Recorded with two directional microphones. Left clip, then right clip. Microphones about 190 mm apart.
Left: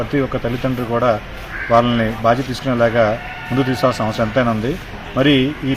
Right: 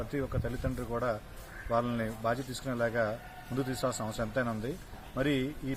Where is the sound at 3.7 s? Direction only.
30° right (ahead or behind).